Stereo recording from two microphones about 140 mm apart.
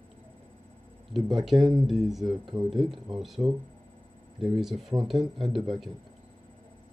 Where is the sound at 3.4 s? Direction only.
50° right (ahead or behind).